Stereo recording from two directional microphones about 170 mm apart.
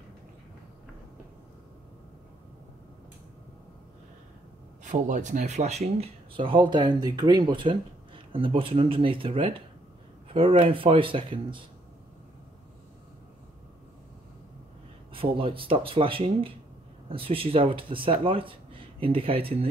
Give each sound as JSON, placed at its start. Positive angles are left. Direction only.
{"t": 4.8, "sound": "speech", "side_deg": -45}
{"t": 15.1, "sound": "speech", "side_deg": -30}